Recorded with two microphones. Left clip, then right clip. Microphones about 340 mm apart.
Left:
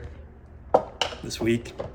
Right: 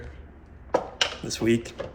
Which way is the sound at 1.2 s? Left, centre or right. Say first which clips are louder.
Right 1 dB; centre.